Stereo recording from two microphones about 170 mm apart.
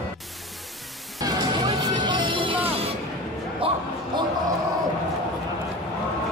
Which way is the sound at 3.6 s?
30° right (ahead or behind).